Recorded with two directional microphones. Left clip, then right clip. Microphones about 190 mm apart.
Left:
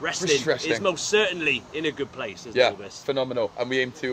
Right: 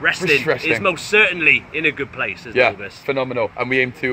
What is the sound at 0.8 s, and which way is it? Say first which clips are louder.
Speech: right 7 dB; 20° left (ahead or behind).